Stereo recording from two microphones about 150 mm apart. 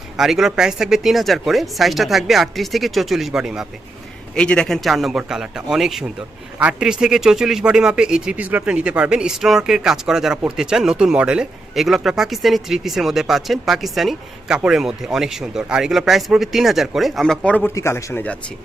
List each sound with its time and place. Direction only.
0.2 s a man's voice: centre (ahead or behind); by 18.3 s 15° left (ahead or behind)